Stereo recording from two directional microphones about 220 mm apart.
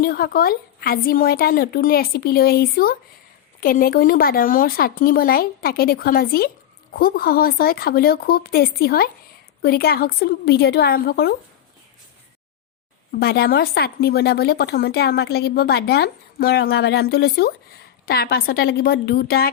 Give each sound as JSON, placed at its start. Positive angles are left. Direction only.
{"t": 0.0, "sound": "a woman's voice", "side_deg": 45}
{"t": 13.1, "sound": "a woman's voice", "side_deg": 45}